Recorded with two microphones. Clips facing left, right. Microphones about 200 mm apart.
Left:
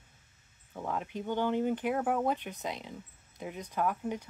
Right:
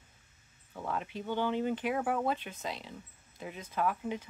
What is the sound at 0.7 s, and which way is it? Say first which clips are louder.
Speech: left 1 dB; 10° left (ahead or behind).